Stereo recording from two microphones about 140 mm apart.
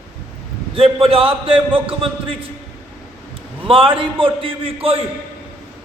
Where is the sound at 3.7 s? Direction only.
40° right (ahead or behind).